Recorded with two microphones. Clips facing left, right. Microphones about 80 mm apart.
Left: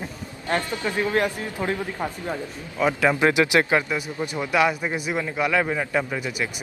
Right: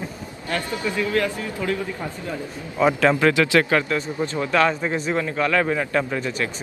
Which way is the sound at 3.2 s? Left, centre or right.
Centre.